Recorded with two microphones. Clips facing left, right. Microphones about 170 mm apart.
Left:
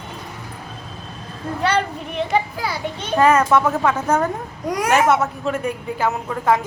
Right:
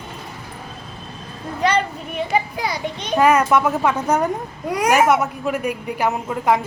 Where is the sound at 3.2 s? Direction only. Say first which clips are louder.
Even; 10° right (ahead or behind).